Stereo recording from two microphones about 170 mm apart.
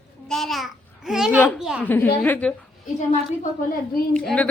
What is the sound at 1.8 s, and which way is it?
Speech, 10° left (ahead or behind).